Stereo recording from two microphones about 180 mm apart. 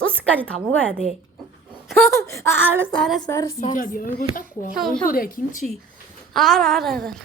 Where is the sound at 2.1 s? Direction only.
15° left (ahead or behind).